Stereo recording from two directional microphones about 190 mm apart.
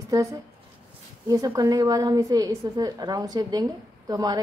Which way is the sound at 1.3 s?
20° right (ahead or behind).